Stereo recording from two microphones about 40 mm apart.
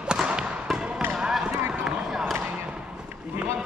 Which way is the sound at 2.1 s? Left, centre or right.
Centre.